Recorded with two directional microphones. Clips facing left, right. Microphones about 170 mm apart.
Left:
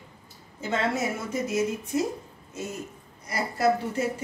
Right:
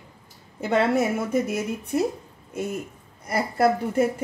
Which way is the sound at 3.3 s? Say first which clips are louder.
Right 3 dB; 55° right (ahead or behind).